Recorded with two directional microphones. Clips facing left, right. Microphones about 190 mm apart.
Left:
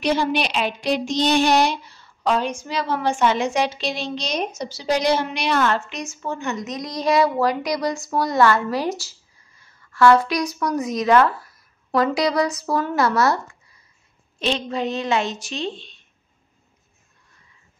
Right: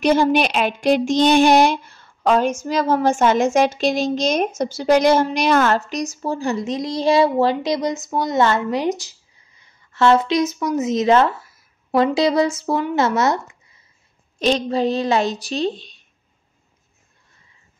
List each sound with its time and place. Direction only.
0.0 s speech: 45° right (ahead or behind); by 13.7 s 20° right (ahead or behind)
14.4 s speech: 35° right (ahead or behind)